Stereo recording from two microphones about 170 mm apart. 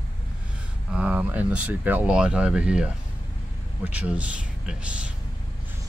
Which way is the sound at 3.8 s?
10° right (ahead or behind).